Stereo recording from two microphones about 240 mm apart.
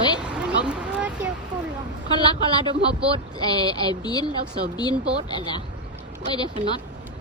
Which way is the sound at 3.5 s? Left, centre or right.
Centre.